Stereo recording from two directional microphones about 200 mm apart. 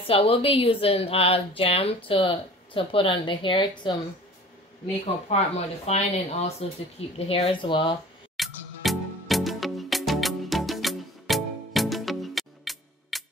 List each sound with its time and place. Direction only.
0.0 s a woman's voice: 30° left (ahead or behind)
5.3 s a woman's voice: 30° left (ahead or behind)
8.4 s music: centre (ahead or behind)